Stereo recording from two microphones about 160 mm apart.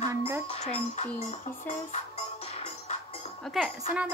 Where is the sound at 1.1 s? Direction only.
45° left (ahead or behind).